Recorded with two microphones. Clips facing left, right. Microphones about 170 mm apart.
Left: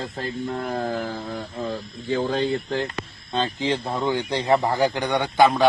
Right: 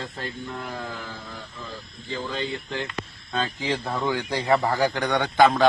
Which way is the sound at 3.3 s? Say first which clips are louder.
Left 3 dB; 30° left (ahead or behind).